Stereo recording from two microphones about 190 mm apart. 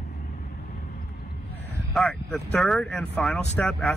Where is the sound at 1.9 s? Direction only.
5° left (ahead or behind).